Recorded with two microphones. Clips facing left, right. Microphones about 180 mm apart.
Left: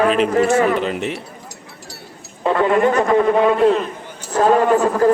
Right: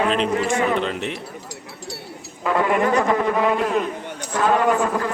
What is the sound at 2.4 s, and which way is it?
Speech, 25° left (ahead or behind).